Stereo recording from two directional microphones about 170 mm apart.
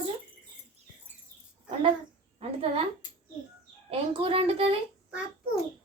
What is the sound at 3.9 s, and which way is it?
Speech, 35° right (ahead or behind).